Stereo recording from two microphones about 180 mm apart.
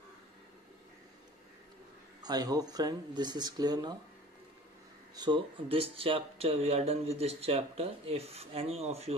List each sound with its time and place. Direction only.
2.2 s speech: 20° right (ahead or behind)
5.1 s speech: 25° right (ahead or behind)